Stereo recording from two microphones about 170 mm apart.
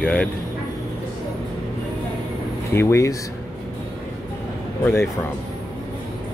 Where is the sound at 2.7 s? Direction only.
15° left (ahead or behind).